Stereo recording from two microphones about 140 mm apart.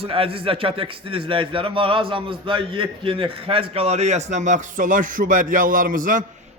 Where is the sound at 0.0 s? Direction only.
40° right (ahead or behind); by 6.2 s 75° right (ahead or behind).